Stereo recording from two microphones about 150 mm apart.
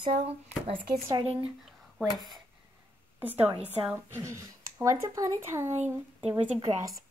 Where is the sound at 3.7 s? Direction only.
10° right (ahead or behind).